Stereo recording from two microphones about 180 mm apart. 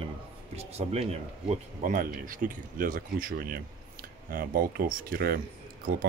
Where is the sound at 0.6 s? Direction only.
35° right (ahead or behind).